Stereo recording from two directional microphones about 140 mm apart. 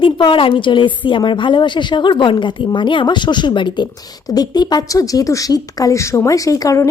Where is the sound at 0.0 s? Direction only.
35° left (ahead or behind).